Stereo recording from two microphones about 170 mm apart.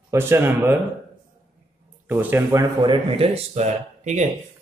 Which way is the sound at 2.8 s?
30° right (ahead or behind).